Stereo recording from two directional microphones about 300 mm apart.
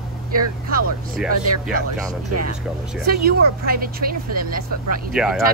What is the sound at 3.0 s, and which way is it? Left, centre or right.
Speech, right.